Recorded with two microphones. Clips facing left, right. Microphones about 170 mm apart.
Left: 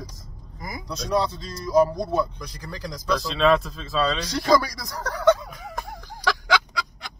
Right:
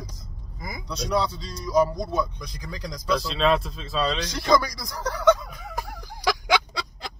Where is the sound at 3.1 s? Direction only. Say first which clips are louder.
Left 2 dB; 5° right (ahead or behind).